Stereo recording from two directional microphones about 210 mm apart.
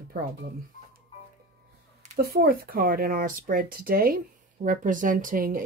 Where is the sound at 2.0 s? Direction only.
40° right (ahead or behind).